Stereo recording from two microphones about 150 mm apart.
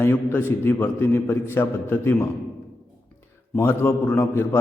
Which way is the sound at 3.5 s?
15° left (ahead or behind).